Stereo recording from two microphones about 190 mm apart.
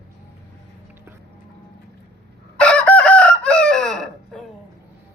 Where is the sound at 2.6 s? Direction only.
5° left (ahead or behind).